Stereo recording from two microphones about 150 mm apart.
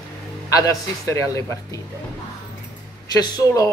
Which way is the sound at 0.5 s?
25° left (ahead or behind).